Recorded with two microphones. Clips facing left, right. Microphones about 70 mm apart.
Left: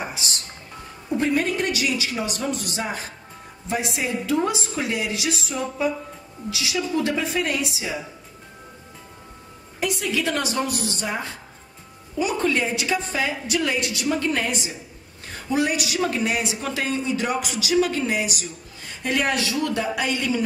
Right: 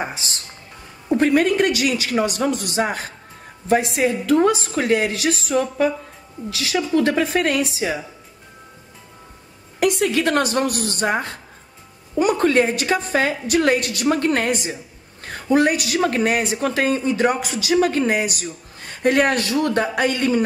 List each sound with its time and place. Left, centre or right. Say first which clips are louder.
0.0 s music: right 3 dB; right
1.1 s a woman's voice: right 6 dB; right
9.8 s a woman's voice: right 6 dB; right